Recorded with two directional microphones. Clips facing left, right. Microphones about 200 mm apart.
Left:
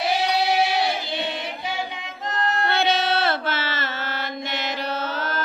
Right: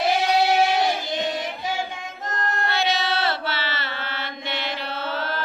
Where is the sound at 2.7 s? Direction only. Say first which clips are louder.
Left 2 dB; 55° left (ahead or behind).